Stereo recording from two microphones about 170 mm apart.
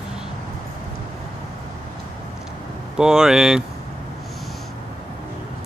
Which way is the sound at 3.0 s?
5° right (ahead or behind).